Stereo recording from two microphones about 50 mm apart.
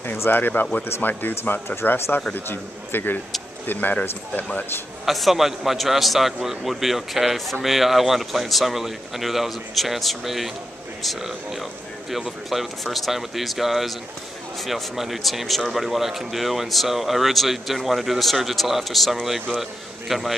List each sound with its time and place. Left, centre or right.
0.3 s speech: left
1.8 s speech: left
2.3 s speech: left
5.0 s a man's voice: centre